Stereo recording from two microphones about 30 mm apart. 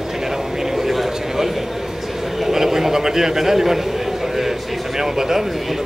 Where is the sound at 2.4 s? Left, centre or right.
Centre.